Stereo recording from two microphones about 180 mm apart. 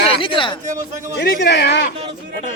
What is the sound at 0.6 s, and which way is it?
Speech, 45° right (ahead or behind).